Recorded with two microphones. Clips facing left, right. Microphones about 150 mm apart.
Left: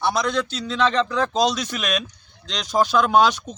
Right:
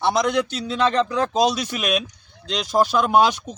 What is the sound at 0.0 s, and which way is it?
Speech, 20° right (ahead or behind).